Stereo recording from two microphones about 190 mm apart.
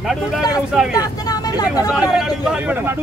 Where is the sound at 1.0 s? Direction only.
20° left (ahead or behind).